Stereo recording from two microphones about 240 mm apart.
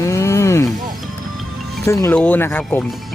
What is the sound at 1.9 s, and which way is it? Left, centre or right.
Speech, centre.